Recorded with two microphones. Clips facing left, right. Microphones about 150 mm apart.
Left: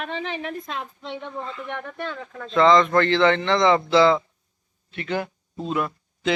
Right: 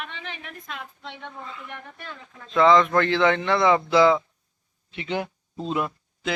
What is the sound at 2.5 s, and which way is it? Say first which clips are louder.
Speech: left 1 dB; 10° right (ahead or behind).